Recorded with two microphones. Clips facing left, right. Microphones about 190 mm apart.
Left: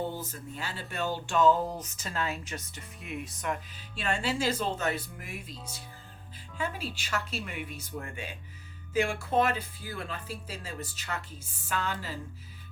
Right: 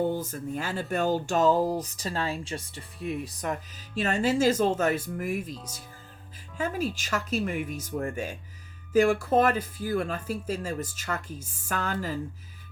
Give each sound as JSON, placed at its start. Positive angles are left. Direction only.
{"t": 0.3, "sound": "speech", "side_deg": -50}
{"t": 6.6, "sound": "speech", "side_deg": -45}